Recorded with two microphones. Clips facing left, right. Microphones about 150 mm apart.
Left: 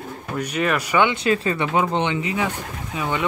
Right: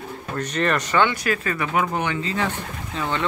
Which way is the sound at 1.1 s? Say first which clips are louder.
Left 4 dB; 25° left (ahead or behind).